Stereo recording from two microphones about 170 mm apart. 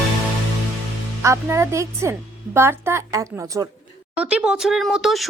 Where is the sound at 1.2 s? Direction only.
15° right (ahead or behind).